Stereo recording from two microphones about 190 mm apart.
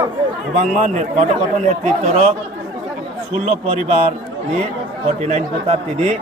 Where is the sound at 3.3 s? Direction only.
35° right (ahead or behind).